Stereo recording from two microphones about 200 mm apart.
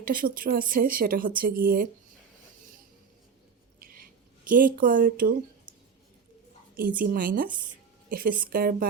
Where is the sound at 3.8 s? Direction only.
45° right (ahead or behind).